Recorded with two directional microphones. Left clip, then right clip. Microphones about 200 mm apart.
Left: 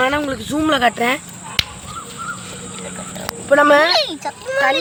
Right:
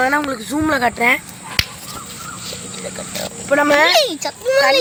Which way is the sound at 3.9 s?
40° right (ahead or behind).